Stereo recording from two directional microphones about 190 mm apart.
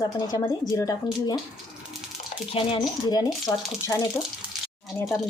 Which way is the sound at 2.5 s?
30° left (ahead or behind).